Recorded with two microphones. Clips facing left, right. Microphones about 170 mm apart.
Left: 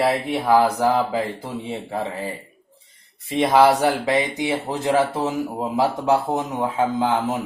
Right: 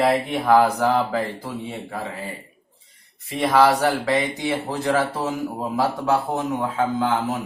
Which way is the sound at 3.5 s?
15° left (ahead or behind).